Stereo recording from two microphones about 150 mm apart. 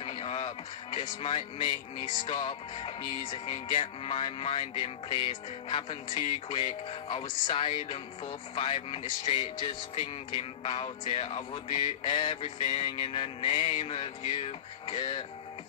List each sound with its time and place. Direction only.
0.0 s music: 40° left (ahead or behind)